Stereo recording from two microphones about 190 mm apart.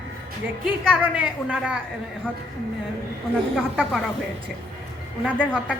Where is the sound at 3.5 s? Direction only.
5° left (ahead or behind).